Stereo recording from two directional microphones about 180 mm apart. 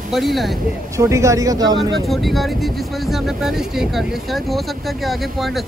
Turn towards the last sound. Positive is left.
turn(degrees=0)  # may be behind; listen again after turning